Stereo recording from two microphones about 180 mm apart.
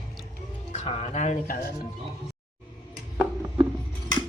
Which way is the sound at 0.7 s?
35° left (ahead or behind).